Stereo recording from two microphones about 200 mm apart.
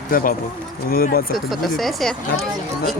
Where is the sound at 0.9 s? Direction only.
45° left (ahead or behind).